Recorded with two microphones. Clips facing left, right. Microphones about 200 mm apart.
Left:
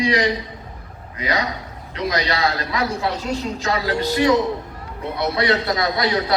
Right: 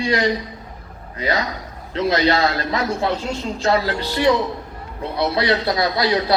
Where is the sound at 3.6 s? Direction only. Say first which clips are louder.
Right 4 dB; 35° right (ahead or behind).